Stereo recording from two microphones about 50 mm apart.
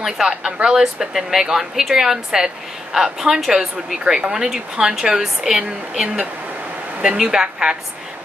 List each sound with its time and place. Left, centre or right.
0.3 s speech: centre